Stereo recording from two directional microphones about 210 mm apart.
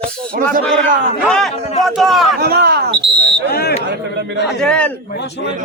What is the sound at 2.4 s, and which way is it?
Speech, 45° right (ahead or behind).